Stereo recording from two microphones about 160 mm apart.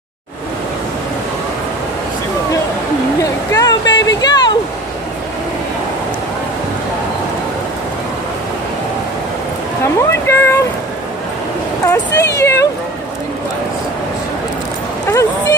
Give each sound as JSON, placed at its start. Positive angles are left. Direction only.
{"t": 3.5, "sound": "a sound", "side_deg": 25}
{"t": 9.9, "sound": "boat", "side_deg": 15}
{"t": 11.8, "sound": "cat", "side_deg": 20}
{"t": 15.0, "sound": "dog", "side_deg": 20}